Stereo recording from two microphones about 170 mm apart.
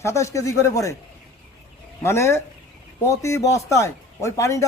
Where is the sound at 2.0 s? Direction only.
15° left (ahead or behind).